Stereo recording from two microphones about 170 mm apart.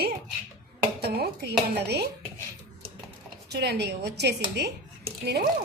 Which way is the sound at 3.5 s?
75° right (ahead or behind).